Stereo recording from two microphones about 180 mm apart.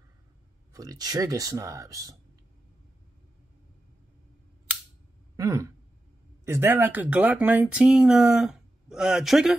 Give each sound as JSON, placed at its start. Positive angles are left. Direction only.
{"t": 0.7, "sound": "speech", "side_deg": -20}
{"t": 5.3, "sound": "a sound", "side_deg": -15}
{"t": 6.4, "sound": "speech", "side_deg": -15}